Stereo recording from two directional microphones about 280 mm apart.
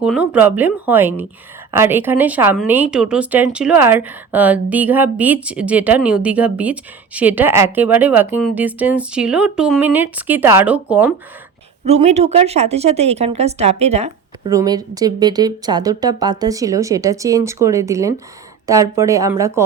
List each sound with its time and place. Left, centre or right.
0.0 s speech: centre
12.0 s speech: right